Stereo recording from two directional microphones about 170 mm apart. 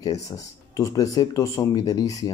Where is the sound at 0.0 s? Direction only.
20° left (ahead or behind).